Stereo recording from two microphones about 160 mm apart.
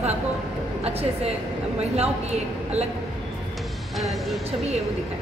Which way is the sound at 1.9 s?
40° right (ahead or behind).